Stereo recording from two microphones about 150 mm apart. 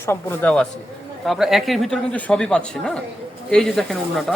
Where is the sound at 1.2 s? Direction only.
Centre (ahead or behind).